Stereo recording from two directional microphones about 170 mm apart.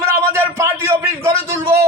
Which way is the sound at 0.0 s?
15° right (ahead or behind).